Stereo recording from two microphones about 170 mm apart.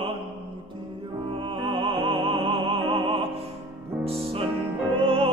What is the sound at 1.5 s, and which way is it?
Music, 30° right (ahead or behind).